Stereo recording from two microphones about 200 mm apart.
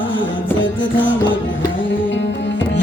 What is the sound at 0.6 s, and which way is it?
Music, 70° left (ahead or behind).